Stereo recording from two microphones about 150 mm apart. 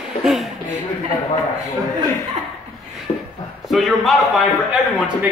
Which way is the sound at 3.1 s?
35° left (ahead or behind).